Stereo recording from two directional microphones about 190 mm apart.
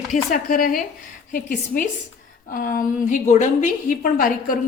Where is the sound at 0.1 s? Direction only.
45° left (ahead or behind).